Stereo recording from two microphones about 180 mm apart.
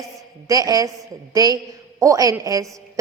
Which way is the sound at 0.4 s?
20° right (ahead or behind).